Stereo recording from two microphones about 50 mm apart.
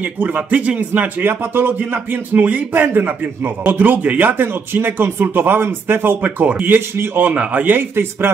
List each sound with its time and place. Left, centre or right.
0.2 s speech: right
1.2 s speech: right